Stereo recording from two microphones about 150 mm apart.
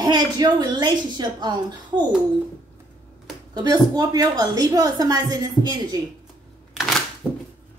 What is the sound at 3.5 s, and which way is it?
A woman's voice, 25° right (ahead or behind).